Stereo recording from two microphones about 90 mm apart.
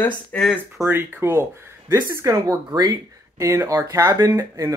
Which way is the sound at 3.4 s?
35° right (ahead or behind).